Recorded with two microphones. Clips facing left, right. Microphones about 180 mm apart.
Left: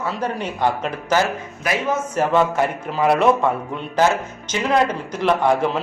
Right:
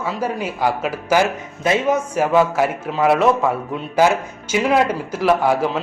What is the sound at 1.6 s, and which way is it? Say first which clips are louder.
Speech: right 5 dB; 25° right (ahead or behind).